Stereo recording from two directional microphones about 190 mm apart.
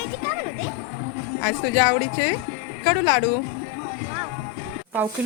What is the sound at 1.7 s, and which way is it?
Speech, 70° left (ahead or behind).